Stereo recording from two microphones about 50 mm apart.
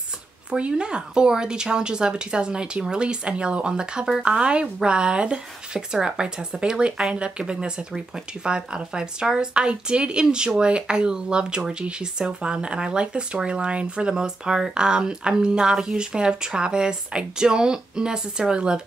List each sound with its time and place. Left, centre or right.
0.5 s speech: right